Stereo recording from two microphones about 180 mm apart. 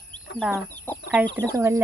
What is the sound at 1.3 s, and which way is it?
Speech, 20° right (ahead or behind).